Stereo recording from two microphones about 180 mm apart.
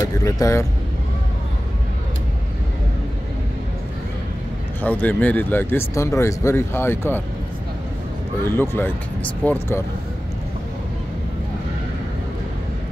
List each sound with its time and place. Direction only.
0.0 s speech: 20° left (ahead or behind)
4.8 s speech: 10° left (ahead or behind)
8.5 s speech: 10° left (ahead or behind)